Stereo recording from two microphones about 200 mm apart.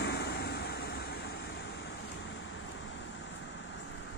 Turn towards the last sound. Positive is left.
turn(degrees=70)  # may be behind; listen again after turning